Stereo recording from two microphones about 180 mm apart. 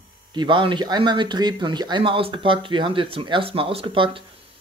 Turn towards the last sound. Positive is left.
turn(degrees=-30)  # may be behind; listen again after turning